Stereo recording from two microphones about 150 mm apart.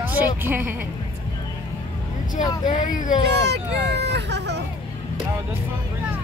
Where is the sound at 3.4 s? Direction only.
90° right.